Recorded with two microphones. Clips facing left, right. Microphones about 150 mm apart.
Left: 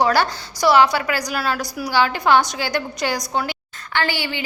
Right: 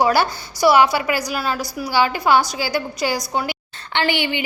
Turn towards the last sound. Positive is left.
turn(degrees=-20)  # may be behind; listen again after turning